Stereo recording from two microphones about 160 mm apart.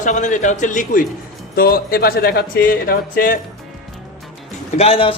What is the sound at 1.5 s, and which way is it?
Speech, 70° left (ahead or behind).